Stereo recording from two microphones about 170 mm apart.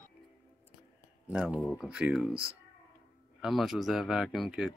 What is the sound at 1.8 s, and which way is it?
Speech, 5° right (ahead or behind).